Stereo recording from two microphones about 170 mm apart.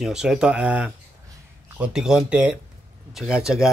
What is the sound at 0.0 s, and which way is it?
A man's voice, 5° right (ahead or behind).